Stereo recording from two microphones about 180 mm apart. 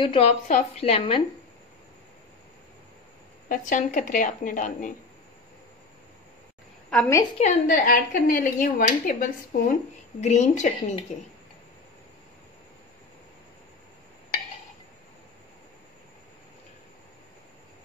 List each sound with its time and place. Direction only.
0.0 s a woman's voice: 30° left (ahead or behind)
3.4 s a woman's voice: 45° left (ahead or behind)
7.3 s a woman's voice: 45° left (ahead or behind)